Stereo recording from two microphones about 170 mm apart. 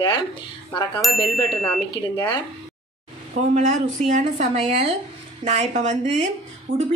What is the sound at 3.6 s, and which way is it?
A woman's voice, 45° right (ahead or behind).